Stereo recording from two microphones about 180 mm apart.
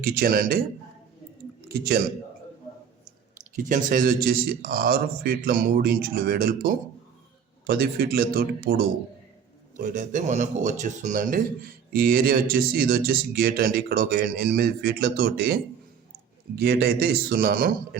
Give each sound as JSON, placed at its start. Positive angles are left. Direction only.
{"t": 0.0, "sound": "a man's voice", "side_deg": -55}
{"t": 1.6, "sound": "speech", "side_deg": -55}
{"t": 3.5, "sound": "speech", "side_deg": -45}
{"t": 9.7, "sound": "speech", "side_deg": -45}
{"t": 16.6, "sound": "speech", "side_deg": -60}